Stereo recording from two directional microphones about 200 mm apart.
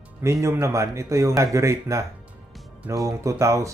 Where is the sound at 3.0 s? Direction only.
15° right (ahead or behind).